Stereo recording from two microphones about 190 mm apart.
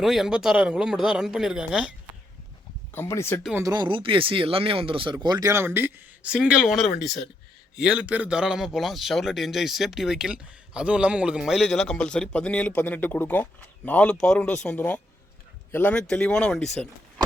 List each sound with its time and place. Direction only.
0.0 s speech: centre (ahead or behind)
2.9 s speech: 15° left (ahead or behind)
3.5 s speech: 20° right (ahead or behind); by 16.9 s 5° left (ahead or behind)